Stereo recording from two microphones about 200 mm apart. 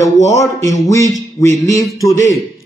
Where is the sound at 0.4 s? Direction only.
15° left (ahead or behind).